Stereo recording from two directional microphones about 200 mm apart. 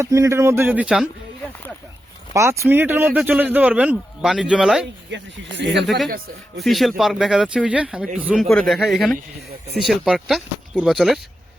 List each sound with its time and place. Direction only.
0.0 s a man's voice: 15° right (ahead or behind)
2.3 s a man's voice: 15° right (ahead or behind)
5.1 s speech: 60° right (ahead or behind)
6.6 s speech: centre (ahead or behind)